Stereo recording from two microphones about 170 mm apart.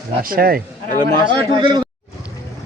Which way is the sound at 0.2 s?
60° right (ahead or behind).